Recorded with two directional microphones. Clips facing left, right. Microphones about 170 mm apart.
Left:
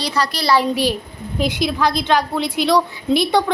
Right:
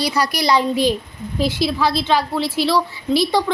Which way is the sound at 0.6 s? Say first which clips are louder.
Right 1 dB; 10° left (ahead or behind).